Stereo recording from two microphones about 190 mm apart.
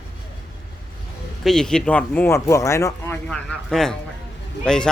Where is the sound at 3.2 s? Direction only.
Centre (ahead or behind).